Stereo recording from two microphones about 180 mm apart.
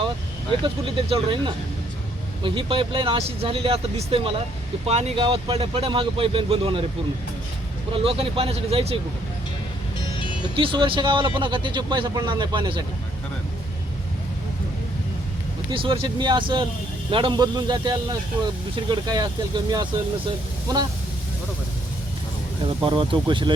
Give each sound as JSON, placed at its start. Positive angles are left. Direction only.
{"t": 0.6, "sound": "speech", "side_deg": -30}
{"t": 7.9, "sound": "speech", "side_deg": -30}
{"t": 10.5, "sound": "speech", "side_deg": -30}
{"t": 15.7, "sound": "speech", "side_deg": -30}
{"t": 22.8, "sound": "speech", "side_deg": -25}